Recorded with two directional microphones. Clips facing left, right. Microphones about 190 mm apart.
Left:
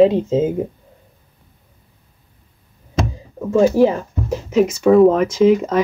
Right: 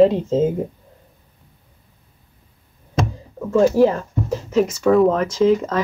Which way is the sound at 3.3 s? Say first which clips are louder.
Left 1 dB; 10° left (ahead or behind).